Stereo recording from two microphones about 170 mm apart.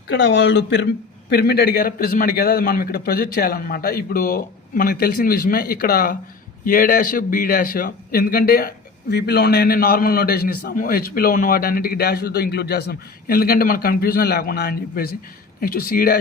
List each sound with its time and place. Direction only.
0.1 s speech: 90° left
1.3 s a man's voice: 70° left (ahead or behind)